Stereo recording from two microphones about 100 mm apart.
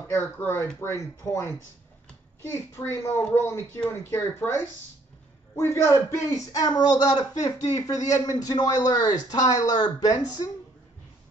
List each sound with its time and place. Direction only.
0.1 s speech: 20° left (ahead or behind)
2.7 s speech: 25° left (ahead or behind)